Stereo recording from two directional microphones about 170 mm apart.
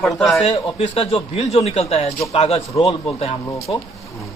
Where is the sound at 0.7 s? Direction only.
35° left (ahead or behind).